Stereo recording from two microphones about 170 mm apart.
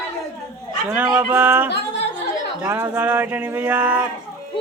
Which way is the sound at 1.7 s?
80° left.